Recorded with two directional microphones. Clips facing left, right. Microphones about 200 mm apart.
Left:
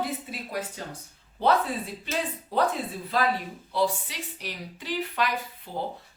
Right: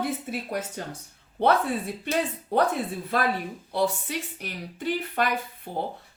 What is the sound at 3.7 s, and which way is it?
Speech, 50° right (ahead or behind).